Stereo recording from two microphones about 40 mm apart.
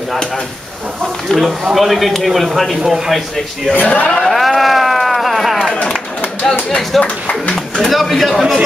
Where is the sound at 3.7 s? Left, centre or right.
Left.